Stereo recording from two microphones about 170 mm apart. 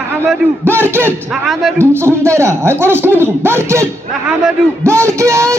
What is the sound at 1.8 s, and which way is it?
Speech, 15° right (ahead or behind).